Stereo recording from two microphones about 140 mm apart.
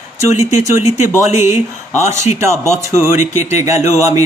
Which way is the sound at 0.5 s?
20° right (ahead or behind).